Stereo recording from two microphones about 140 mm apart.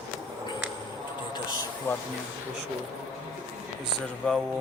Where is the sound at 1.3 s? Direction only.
30° left (ahead or behind).